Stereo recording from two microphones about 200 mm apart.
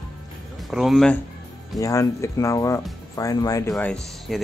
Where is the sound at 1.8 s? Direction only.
15° left (ahead or behind).